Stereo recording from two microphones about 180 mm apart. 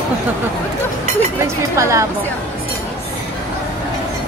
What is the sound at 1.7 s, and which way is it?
Speech, 15° right (ahead or behind).